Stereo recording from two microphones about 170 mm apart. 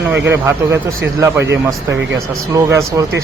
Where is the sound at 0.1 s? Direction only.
15° right (ahead or behind).